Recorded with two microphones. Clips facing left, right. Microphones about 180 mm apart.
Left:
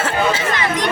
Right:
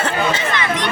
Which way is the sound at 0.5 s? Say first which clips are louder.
Left 1 dB; 40° left (ahead or behind).